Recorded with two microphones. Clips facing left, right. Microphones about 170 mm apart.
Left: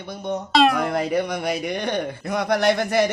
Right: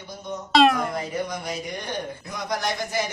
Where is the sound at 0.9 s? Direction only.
70° left (ahead or behind).